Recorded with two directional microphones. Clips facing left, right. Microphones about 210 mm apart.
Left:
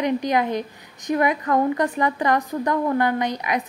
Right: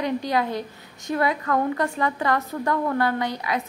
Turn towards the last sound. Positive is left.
turn(degrees=20)  # may be behind; listen again after turning